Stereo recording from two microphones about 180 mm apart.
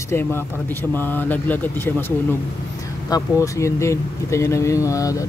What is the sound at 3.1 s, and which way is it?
Speech, 15° left (ahead or behind).